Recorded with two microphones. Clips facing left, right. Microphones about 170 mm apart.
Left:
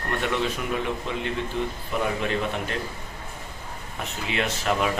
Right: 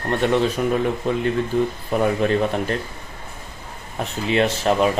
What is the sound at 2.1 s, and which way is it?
Speech, 40° right (ahead or behind).